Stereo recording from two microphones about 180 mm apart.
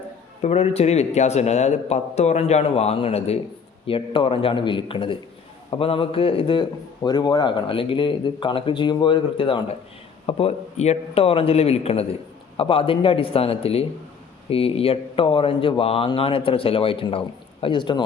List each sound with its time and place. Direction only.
0.4 s a man's voice: 35° left (ahead or behind)